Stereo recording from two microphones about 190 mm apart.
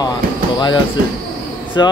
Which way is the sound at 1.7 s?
20° left (ahead or behind).